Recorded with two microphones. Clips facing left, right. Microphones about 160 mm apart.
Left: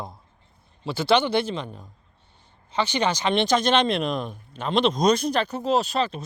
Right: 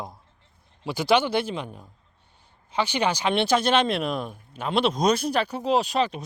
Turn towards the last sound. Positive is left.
turn(degrees=-15)  # may be behind; listen again after turning